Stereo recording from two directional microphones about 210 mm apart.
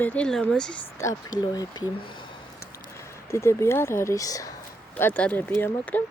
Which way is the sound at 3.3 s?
15° left (ahead or behind).